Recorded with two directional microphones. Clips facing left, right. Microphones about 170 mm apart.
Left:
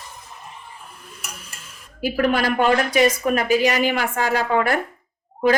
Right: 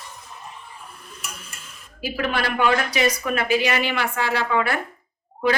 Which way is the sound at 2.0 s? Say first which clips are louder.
Left 5 dB; 50° left (ahead or behind).